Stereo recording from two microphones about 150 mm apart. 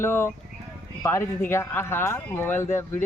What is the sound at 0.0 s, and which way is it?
Speech, 15° left (ahead or behind).